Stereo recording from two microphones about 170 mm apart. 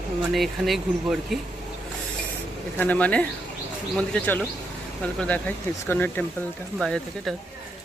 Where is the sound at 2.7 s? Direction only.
10° left (ahead or behind).